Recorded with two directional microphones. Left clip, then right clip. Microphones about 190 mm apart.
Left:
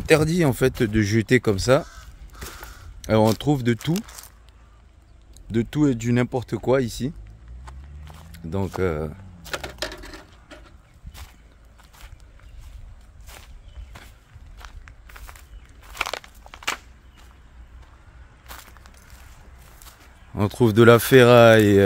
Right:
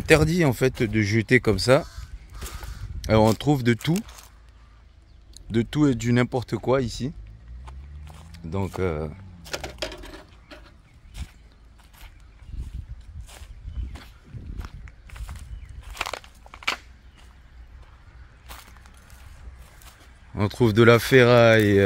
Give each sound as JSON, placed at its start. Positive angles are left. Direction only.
{"t": 0.0, "sound": "speech", "side_deg": 5}
{"t": 3.0, "sound": "speech", "side_deg": 0}
{"t": 5.3, "sound": "speech", "side_deg": -5}
{"t": 6.6, "sound": "speech", "side_deg": 15}
{"t": 7.6, "sound": "walk", "side_deg": 0}
{"t": 8.3, "sound": "speech", "side_deg": 15}
{"t": 9.4, "sound": "vehicle", "side_deg": -5}
{"t": 14.6, "sound": "walk", "side_deg": 5}
{"t": 15.9, "sound": "crunch", "side_deg": 5}
{"t": 20.3, "sound": "speech", "side_deg": 15}